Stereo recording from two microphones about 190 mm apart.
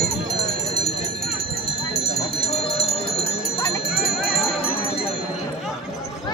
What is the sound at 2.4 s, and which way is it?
Wind chime, 30° left (ahead or behind).